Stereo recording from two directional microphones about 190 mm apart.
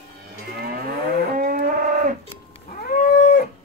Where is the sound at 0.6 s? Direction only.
50° right (ahead or behind).